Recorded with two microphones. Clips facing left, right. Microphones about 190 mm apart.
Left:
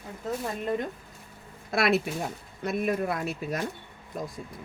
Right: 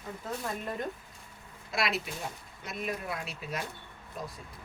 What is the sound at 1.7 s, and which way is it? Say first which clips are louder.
Speech: left 8 dB; 55° left (ahead or behind).